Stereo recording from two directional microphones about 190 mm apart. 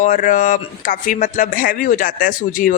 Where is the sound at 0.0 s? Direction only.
40° left (ahead or behind).